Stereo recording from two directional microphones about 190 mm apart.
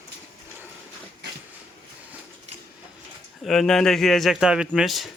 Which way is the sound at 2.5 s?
35° right (ahead or behind).